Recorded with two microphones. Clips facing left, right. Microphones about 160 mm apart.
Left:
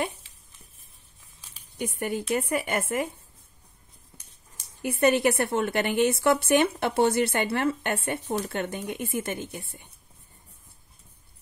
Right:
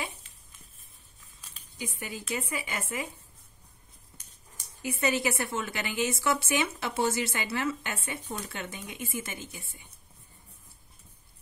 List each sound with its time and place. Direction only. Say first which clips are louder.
1.8 s a woman's voice: left 9 dB; 60° left (ahead or behind)
4.8 s a woman's voice: left 7 dB; 60° left (ahead or behind)